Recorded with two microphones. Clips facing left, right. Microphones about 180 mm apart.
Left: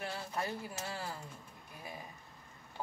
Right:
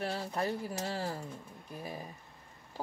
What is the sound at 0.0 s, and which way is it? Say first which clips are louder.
Speech: right 5 dB; 35° right (ahead or behind).